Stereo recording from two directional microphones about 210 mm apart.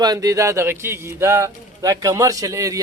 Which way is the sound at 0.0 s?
15° right (ahead or behind).